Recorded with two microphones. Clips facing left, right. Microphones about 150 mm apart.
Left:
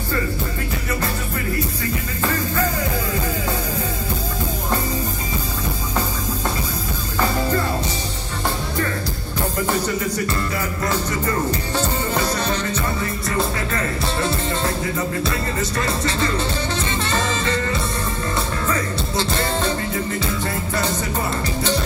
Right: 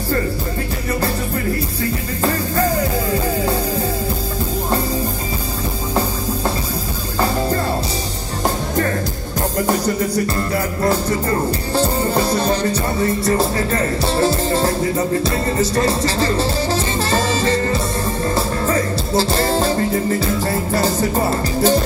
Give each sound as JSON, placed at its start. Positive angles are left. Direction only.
{"t": 9.7, "sound": "music", "side_deg": -40}
{"t": 15.7, "sound": "music", "side_deg": -30}